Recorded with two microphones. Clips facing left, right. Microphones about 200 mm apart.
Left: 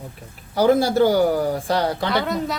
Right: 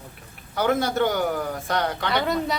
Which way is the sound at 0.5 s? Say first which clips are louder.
Left 6 dB; 35° left (ahead or behind).